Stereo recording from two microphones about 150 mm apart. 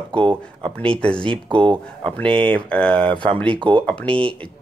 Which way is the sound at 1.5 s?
35° right (ahead or behind).